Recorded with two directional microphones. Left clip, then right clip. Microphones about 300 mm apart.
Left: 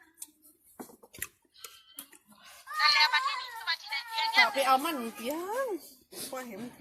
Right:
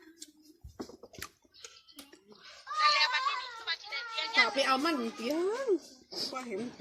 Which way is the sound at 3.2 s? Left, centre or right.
Left.